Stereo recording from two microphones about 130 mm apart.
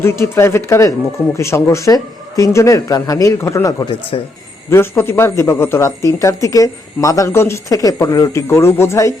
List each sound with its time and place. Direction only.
0.0 s speech: 20° left (ahead or behind)
4.1 s speech: 45° left (ahead or behind)
4.7 s speech: 20° left (ahead or behind)